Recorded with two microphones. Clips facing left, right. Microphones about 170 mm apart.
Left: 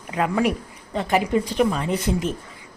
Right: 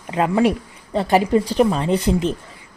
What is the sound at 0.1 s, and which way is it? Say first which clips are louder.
Speech: right 4 dB; 30° right (ahead or behind).